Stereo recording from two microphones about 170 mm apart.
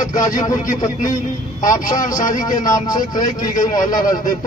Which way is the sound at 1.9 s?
20° left (ahead or behind).